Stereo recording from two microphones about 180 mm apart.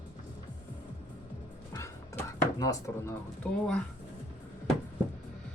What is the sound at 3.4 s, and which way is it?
Speech, 10° left (ahead or behind).